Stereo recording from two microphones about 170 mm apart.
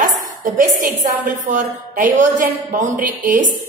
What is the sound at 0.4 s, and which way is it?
A woman's voice, 50° right (ahead or behind).